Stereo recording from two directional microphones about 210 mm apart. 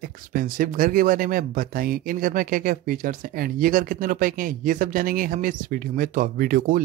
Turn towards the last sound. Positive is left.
turn(degrees=-40)  # may be behind; listen again after turning